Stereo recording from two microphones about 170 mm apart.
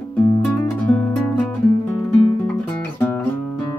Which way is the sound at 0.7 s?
5° left (ahead or behind).